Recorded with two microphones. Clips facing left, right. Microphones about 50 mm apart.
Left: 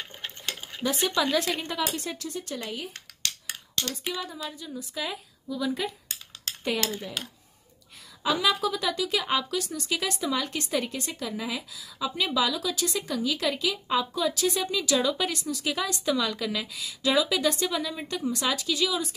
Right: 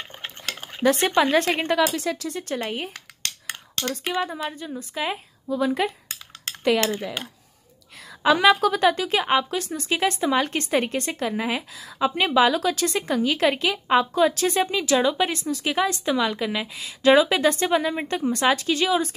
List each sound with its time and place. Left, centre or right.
0.6 s speech: right
1.8 s speech: right
2.4 s cutlery: right
4.1 s a woman's voice: right
6.9 s speech: right
8.2 s a woman's voice: right